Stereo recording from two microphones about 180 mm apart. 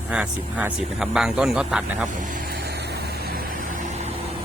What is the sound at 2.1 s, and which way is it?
Vehicle, 50° right (ahead or behind).